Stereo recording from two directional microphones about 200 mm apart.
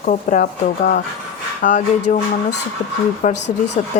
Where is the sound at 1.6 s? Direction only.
40° left (ahead or behind).